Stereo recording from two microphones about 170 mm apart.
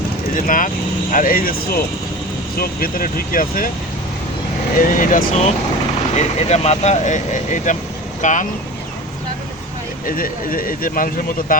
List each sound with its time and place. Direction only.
0.3 s speech: 50° left (ahead or behind)
4.8 s speech: 50° left (ahead or behind)
6.1 s speech: 40° left (ahead or behind)
10.1 s speech: 55° left (ahead or behind)